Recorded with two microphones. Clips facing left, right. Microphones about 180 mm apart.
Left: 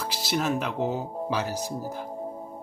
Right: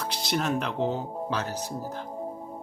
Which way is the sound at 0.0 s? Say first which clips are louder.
Left 1 dB; 5° left (ahead or behind).